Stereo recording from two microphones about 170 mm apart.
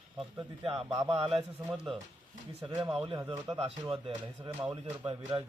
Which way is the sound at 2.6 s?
25° right (ahead or behind).